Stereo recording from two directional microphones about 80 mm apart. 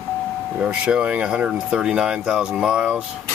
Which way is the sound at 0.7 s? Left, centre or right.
Centre.